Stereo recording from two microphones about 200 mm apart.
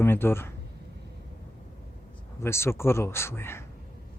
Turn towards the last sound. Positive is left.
turn(degrees=10)  # may be behind; listen again after turning